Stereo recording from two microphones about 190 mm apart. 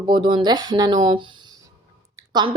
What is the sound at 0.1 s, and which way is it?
A woman's voice, 25° right (ahead or behind).